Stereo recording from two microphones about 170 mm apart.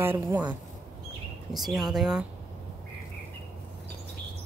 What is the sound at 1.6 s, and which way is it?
Speech, centre (ahead or behind).